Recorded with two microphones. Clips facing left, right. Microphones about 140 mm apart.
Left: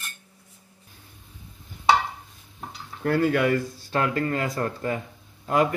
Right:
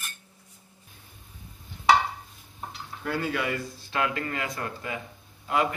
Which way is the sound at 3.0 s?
50° left (ahead or behind).